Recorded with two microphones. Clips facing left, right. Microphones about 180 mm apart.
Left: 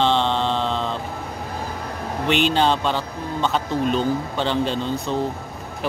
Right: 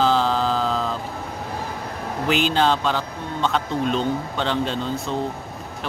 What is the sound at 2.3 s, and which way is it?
A man's voice, centre (ahead or behind).